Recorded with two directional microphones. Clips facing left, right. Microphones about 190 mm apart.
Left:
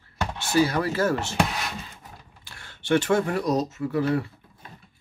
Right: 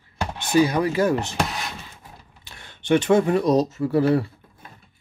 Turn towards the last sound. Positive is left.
turn(degrees=-30)  # may be behind; listen again after turning